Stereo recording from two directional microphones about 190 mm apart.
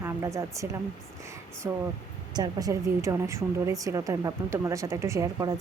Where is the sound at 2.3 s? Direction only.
20° right (ahead or behind).